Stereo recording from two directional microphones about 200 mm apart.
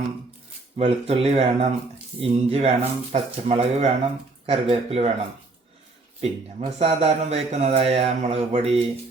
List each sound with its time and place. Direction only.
0.8 s speech: 30° right (ahead or behind)
6.6 s speech: 30° right (ahead or behind)